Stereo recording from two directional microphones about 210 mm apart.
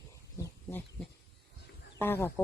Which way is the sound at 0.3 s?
10° left (ahead or behind).